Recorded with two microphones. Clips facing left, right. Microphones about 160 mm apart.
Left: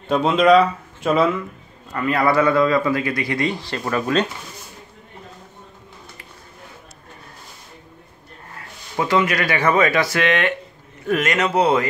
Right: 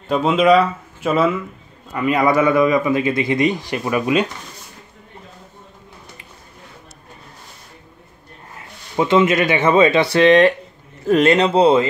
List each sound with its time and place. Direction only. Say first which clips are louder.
0.1 s speech: even; 5° right (ahead or behind)
1.9 s a man's voice: right 2 dB; 15° right (ahead or behind)
8.5 s speech: right 4 dB; 20° right (ahead or behind)